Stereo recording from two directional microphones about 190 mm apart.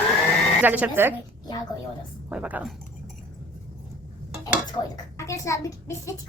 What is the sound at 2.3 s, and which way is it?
Speech, 5° right (ahead or behind).